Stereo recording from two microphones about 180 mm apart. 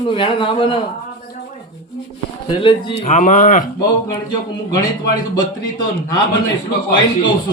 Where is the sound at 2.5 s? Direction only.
25° left (ahead or behind).